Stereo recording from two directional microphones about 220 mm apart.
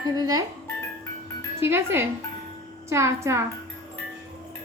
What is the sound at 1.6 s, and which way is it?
A woman's voice, 10° right (ahead or behind).